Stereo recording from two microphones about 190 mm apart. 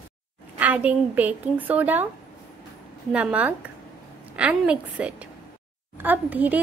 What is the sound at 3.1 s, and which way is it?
A woman's voice, 5° right (ahead or behind).